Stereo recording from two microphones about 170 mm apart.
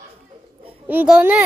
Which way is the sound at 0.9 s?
5° right (ahead or behind).